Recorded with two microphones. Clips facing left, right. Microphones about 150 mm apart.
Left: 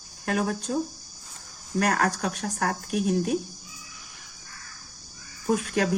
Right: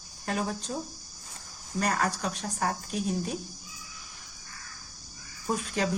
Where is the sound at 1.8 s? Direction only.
65° left (ahead or behind).